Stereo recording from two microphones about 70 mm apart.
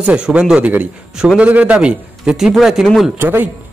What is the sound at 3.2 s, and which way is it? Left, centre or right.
Speech, right.